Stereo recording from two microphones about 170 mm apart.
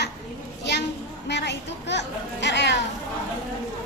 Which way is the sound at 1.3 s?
90° left.